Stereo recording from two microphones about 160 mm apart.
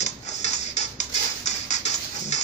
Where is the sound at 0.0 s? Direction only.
45° left (ahead or behind).